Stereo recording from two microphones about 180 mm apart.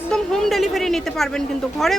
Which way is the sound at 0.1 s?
Centre (ahead or behind).